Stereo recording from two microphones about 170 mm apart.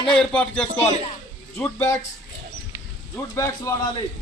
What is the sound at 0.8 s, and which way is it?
Speech, 40° left (ahead or behind).